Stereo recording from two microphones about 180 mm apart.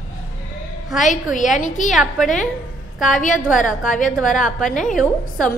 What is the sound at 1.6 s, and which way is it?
Speech, 45° left (ahead or behind).